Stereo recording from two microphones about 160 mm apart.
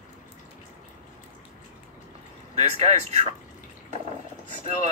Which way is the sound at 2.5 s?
45° right (ahead or behind).